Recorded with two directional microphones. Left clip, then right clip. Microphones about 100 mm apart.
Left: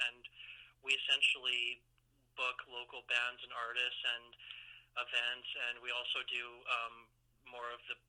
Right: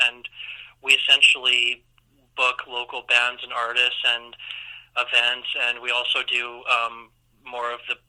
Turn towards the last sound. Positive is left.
turn(degrees=-35)  # may be behind; listen again after turning